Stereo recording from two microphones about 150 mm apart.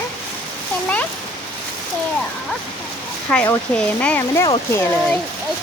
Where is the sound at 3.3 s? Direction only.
10° left (ahead or behind).